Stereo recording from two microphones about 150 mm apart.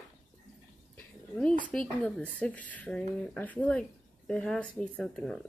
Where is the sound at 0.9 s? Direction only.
5° left (ahead or behind).